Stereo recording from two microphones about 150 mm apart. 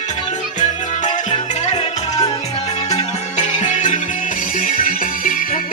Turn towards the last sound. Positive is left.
turn(degrees=65)  # may be behind; listen again after turning